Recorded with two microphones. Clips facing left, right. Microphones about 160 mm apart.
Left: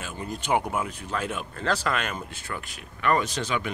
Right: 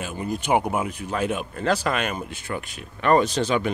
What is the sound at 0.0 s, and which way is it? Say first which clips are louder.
Speech: right 6 dB; 15° right (ahead or behind).